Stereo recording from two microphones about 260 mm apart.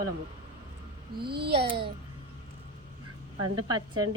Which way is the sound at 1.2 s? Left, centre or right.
Right.